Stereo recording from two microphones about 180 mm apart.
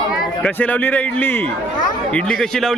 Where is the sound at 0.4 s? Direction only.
10° left (ahead or behind).